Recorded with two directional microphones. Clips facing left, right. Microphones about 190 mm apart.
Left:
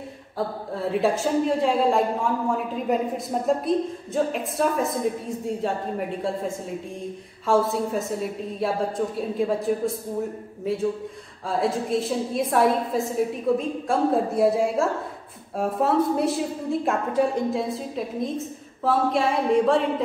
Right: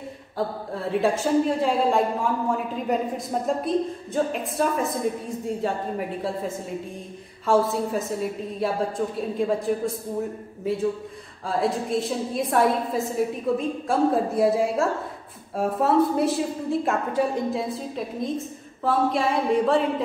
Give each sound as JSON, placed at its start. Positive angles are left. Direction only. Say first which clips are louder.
{"t": 0.7, "sound": "a woman's voice", "louder": "even", "side_deg": 0}
{"t": 11.4, "sound": "a woman's voice", "louder": "even", "side_deg": 0}